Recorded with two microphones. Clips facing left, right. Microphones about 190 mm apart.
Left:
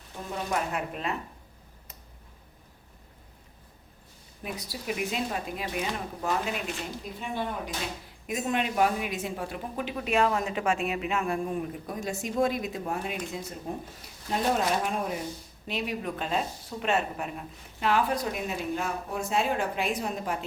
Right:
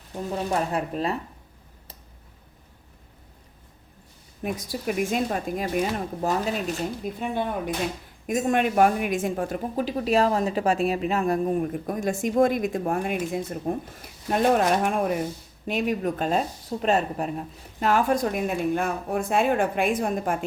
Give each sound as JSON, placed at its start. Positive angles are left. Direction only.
{"t": 0.5, "sound": "speech", "side_deg": -35}
{"t": 4.4, "sound": "a woman's voice", "side_deg": -45}